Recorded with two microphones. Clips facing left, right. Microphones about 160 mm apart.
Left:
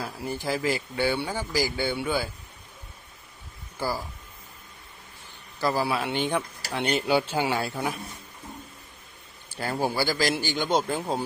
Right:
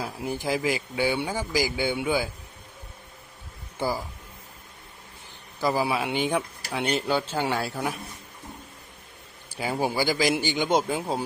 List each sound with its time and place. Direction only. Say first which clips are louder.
0.0 s speech: right 1 dB; 15° right (ahead or behind)
3.8 s speech: right 2 dB; 20° right (ahead or behind)
5.5 s speech: right 1 dB; 15° right (ahead or behind)
7.1 s speech: left 2 dB; 10° left (ahead or behind)
9.5 s speech: right 1 dB; 10° right (ahead or behind)
10.8 s speech: even; 5° right (ahead or behind)